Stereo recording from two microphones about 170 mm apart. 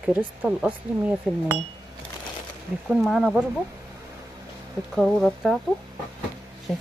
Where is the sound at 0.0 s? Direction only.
5° right (ahead or behind).